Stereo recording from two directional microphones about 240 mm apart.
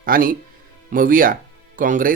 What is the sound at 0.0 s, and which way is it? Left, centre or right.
Speech, right.